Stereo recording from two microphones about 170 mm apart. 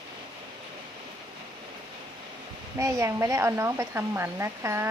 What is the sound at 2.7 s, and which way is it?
Speech, 15° right (ahead or behind).